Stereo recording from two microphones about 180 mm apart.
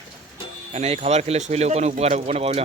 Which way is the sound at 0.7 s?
35° right (ahead or behind).